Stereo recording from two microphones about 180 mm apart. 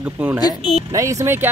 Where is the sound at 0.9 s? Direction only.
15° right (ahead or behind).